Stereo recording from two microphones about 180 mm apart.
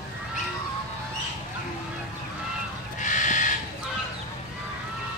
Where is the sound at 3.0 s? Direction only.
45° left (ahead or behind).